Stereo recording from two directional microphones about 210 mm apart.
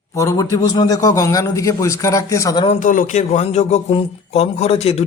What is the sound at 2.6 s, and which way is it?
A man's voice, 40° left (ahead or behind).